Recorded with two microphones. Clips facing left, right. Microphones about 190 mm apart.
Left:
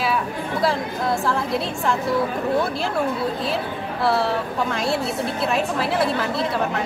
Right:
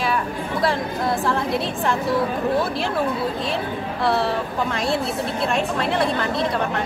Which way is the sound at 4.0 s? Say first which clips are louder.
Left 1 dB; centre (ahead or behind).